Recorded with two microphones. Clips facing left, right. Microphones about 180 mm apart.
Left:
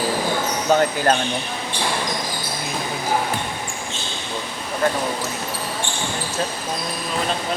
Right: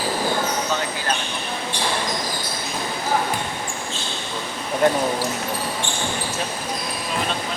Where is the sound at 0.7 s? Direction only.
50° left (ahead or behind).